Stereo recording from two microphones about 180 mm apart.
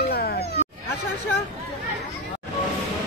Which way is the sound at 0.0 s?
60° left (ahead or behind).